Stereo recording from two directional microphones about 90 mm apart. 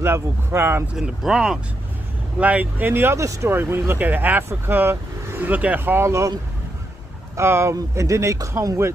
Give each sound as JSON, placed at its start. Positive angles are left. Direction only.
{"t": 0.0, "sound": "speech", "side_deg": -25}
{"t": 0.9, "sound": "speech", "side_deg": -5}
{"t": 2.4, "sound": "speech", "side_deg": -15}
{"t": 5.9, "sound": "speech", "side_deg": -30}
{"t": 7.3, "sound": "speech", "side_deg": -30}